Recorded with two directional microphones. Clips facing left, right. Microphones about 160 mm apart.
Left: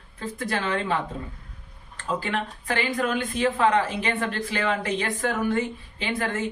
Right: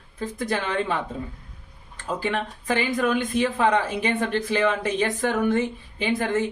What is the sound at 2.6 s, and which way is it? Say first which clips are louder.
A woman's voice: right 4 dB; 15° right (ahead or behind).